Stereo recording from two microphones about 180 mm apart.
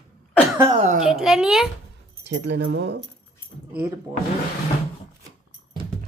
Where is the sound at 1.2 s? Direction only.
5° right (ahead or behind).